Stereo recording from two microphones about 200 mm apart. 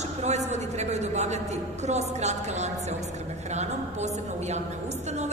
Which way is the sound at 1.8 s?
35° right (ahead or behind).